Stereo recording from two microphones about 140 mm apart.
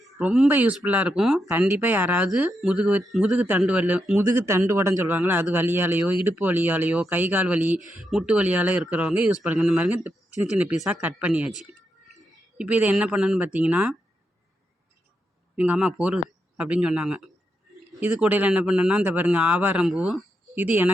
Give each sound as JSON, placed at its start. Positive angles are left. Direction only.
{"t": 0.2, "sound": "speech", "side_deg": -10}
{"t": 1.5, "sound": "speech", "side_deg": -15}
{"t": 7.8, "sound": "speech", "side_deg": -70}
{"t": 8.0, "sound": "speech", "side_deg": 0}
{"t": 15.5, "sound": "speech", "side_deg": -10}